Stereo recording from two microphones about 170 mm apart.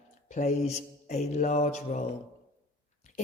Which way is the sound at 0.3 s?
45° left (ahead or behind).